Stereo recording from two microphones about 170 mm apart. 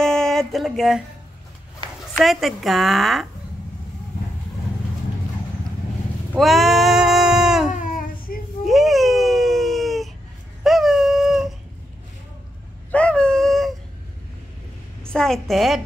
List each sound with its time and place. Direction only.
0.0 s music: 5° left (ahead or behind)
2.1 s a woman's voice: centre (ahead or behind)
6.3 s a sound: centre (ahead or behind)
7.7 s a sound: 50° left (ahead or behind)
8.6 s baby cry: centre (ahead or behind)
10.6 s dog: centre (ahead or behind)
12.9 s dog: 5° left (ahead or behind)
15.0 s a woman's voice: 5° left (ahead or behind)